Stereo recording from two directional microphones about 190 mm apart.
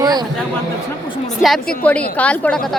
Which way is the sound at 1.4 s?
Centre (ahead or behind).